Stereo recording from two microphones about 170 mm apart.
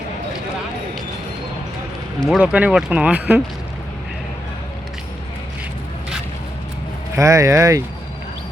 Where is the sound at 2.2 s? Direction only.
5° right (ahead or behind).